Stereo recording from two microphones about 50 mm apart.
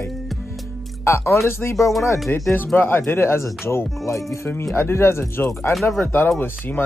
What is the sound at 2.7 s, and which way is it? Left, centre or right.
Speech, left.